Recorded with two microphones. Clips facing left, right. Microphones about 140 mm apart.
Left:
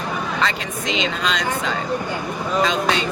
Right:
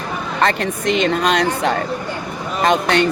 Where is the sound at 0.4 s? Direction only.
55° right (ahead or behind).